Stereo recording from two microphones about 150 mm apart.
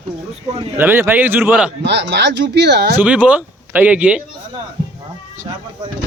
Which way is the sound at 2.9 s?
10° right (ahead or behind).